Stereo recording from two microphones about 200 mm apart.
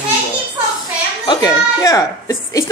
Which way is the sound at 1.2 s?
20° left (ahead or behind).